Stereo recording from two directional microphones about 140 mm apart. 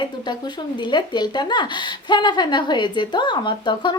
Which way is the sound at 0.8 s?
35° left (ahead or behind).